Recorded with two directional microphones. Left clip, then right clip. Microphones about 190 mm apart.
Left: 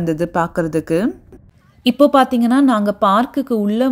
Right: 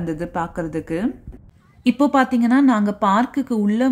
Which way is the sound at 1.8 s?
25° left (ahead or behind).